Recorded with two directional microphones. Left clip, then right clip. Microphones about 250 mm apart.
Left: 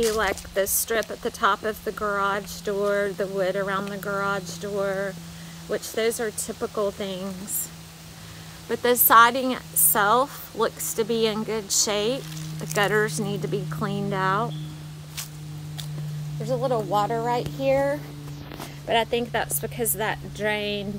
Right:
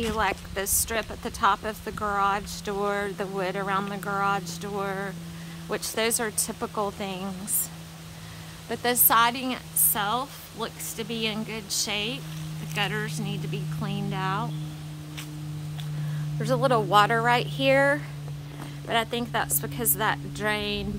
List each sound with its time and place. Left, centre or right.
0.2 s speech: centre
8.6 s a woman's voice: centre
16.6 s speech: centre
18.9 s speech: centre